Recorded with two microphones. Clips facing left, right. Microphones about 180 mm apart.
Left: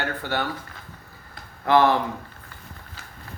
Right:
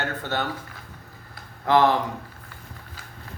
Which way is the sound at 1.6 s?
15° right (ahead or behind).